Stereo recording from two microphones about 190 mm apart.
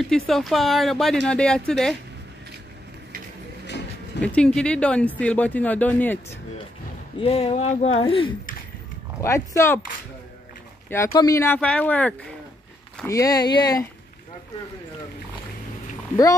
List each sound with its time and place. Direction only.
0.1 s speech: centre (ahead or behind)
3.6 s a sound: 65° left (ahead or behind)
4.2 s speech: 5° left (ahead or behind)
7.2 s speech: 30° left (ahead or behind)
9.2 s speech: 15° left (ahead or behind)
11.1 s speech: 20° left (ahead or behind)
13.0 s speech: 15° left (ahead or behind)